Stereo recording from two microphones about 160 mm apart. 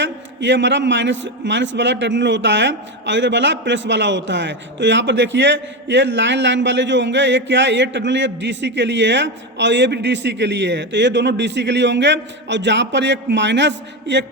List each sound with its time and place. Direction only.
0.0 s a man's voice: 90° right